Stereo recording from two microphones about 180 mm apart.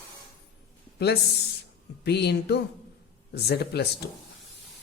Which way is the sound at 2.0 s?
65° left (ahead or behind).